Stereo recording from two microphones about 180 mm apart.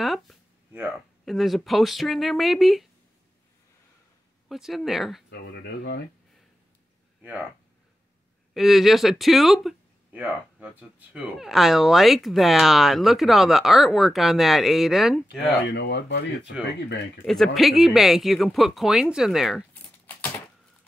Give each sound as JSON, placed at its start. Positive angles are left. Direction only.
{"t": 0.0, "sound": "speech", "side_deg": 0}
{"t": 4.5, "sound": "speech", "side_deg": 0}
{"t": 5.3, "sound": "speech", "side_deg": 70}
{"t": 8.5, "sound": "speech", "side_deg": 0}
{"t": 15.2, "sound": "speech", "side_deg": 75}
{"t": 17.3, "sound": "speech", "side_deg": 0}
{"t": 19.7, "sound": "crumpling", "side_deg": 10}